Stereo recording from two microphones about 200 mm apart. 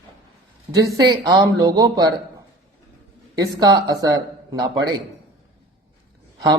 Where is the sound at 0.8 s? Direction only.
15° right (ahead or behind).